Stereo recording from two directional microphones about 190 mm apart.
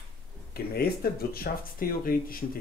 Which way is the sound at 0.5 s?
55° left (ahead or behind).